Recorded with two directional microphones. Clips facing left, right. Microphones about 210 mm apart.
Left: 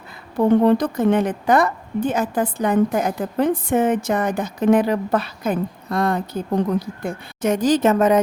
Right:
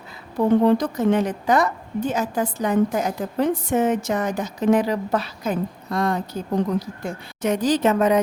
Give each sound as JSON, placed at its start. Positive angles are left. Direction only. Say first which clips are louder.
{"t": 0.8, "sound": "a woman's voice", "louder": "left 2 dB", "side_deg": 55}